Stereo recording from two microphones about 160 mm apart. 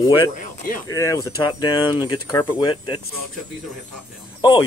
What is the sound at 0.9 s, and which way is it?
Speech, 20° left (ahead or behind).